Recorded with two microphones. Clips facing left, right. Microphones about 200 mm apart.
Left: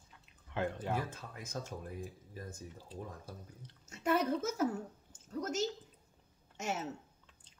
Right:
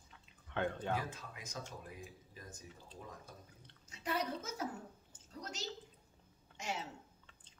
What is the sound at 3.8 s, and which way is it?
Speech, 50° left (ahead or behind).